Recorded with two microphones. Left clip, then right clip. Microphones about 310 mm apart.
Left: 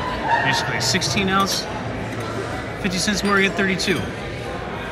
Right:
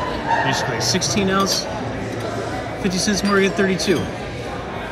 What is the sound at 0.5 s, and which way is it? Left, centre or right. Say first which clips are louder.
Speech: even; centre.